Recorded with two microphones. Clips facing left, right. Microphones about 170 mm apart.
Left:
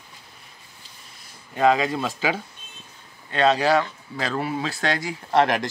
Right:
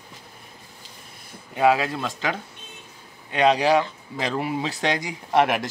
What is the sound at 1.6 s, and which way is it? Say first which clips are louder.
Speech: even; 5° right (ahead or behind).